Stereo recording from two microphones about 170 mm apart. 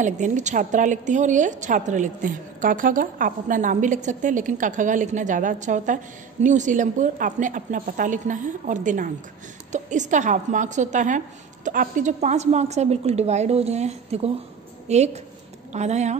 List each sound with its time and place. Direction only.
0.0 s a woman's voice: 45° right (ahead or behind)